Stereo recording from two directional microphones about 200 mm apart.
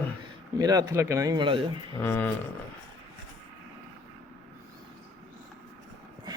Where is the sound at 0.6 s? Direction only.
20° right (ahead or behind).